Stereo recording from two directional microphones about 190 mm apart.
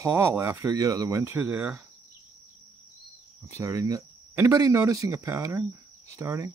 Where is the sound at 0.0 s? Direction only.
15° right (ahead or behind).